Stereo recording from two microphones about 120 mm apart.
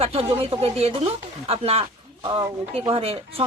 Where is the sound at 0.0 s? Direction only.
55° right (ahead or behind).